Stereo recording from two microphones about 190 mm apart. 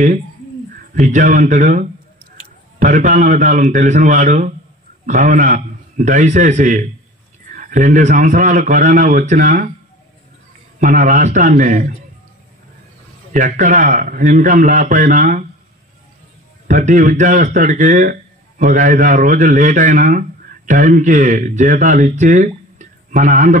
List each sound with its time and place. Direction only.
0.7 s a man's voice: 45° right (ahead or behind)
10.8 s a man's voice: 45° right (ahead or behind)
13.3 s a man's voice: 40° right (ahead or behind)
16.6 s a man's voice: 40° right (ahead or behind)